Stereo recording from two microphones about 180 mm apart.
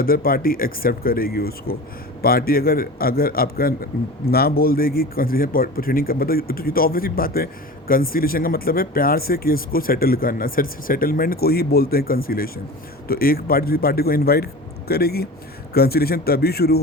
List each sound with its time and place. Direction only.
0.0 s speech: 55° left (ahead or behind)